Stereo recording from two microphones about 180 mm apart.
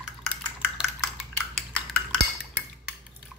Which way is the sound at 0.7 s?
Centre (ahead or behind).